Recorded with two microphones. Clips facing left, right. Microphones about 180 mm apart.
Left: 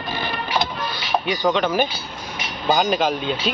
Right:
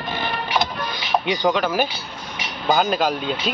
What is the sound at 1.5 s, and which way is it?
A man's voice, 5° right (ahead or behind).